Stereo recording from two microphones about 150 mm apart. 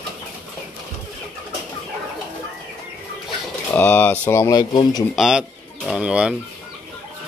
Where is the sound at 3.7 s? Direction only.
10° left (ahead or behind).